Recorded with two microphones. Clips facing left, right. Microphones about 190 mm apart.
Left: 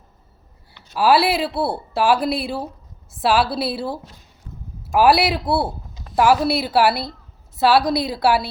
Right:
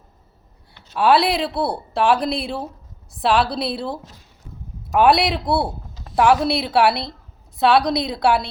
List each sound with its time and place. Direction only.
0.9 s speech: 5° left (ahead or behind)